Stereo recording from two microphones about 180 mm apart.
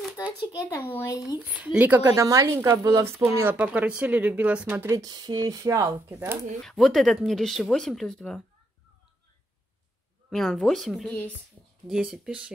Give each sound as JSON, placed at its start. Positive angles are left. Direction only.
{"t": 0.7, "sound": "speech", "side_deg": 10}
{"t": 1.4, "sound": "speech", "side_deg": -5}
{"t": 6.6, "sound": "speech", "side_deg": 0}
{"t": 10.3, "sound": "speech", "side_deg": 0}